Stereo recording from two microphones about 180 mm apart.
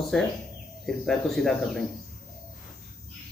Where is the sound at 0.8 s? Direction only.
Centre (ahead or behind).